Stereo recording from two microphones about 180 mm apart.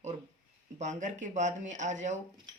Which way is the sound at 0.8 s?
40° right (ahead or behind).